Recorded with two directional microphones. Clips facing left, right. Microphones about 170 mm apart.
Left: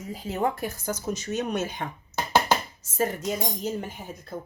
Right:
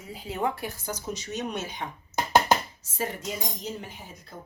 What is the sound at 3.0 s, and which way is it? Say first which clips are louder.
Speech: left 5 dB; 45° left (ahead or behind).